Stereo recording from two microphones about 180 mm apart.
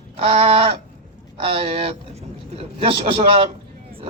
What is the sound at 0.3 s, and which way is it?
A man's voice, 30° right (ahead or behind).